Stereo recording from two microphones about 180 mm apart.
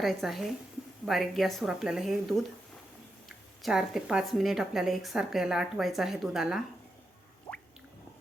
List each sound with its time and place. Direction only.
0.0 s a woman's voice: centre (ahead or behind)